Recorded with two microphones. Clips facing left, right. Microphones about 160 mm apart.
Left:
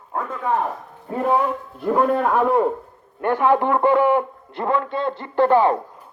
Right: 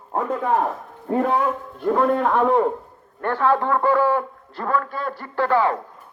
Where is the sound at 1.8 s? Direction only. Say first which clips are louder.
Even; 5° left (ahead or behind).